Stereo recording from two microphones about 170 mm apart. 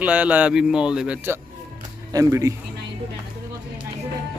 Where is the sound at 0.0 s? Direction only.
10° right (ahead or behind).